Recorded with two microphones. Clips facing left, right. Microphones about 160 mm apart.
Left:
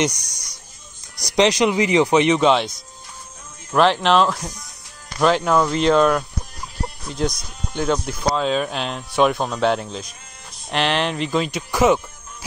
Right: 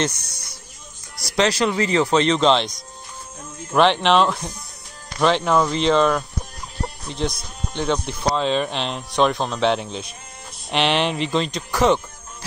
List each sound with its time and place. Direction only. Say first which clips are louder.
0.0 s speech: left 2 dB; 15° left (ahead or behind)
3.7 s speech: even; centre (ahead or behind)